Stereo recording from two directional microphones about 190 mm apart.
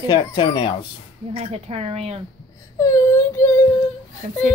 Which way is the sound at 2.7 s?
15° left (ahead or behind).